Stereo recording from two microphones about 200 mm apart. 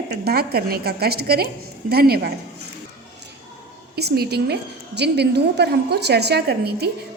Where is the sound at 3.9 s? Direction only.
50° right (ahead or behind).